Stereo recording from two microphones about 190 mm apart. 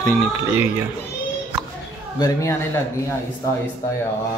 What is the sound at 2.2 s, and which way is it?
Speech, 15° left (ahead or behind).